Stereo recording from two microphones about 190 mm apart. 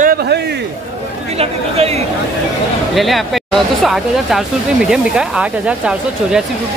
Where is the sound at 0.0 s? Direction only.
50° right (ahead or behind).